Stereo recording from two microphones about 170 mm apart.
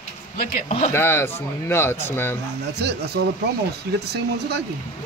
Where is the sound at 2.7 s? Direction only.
75° right (ahead or behind).